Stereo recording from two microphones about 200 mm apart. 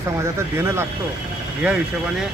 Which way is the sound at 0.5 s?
10° right (ahead or behind).